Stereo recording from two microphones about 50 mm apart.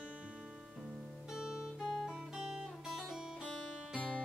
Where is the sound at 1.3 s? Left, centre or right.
Centre.